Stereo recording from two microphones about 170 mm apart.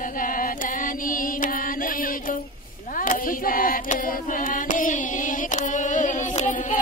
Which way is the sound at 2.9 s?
55° left (ahead or behind).